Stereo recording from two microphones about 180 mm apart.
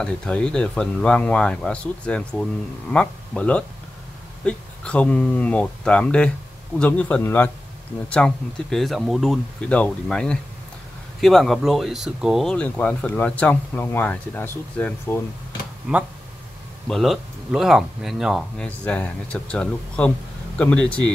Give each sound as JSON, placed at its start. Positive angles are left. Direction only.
{"t": 0.0, "sound": "speech", "side_deg": 5}
{"t": 15.9, "sound": "speech", "side_deg": -5}